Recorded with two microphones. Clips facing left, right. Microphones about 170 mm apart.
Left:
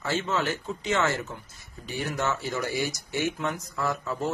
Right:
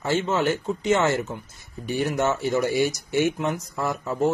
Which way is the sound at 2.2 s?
25° right (ahead or behind).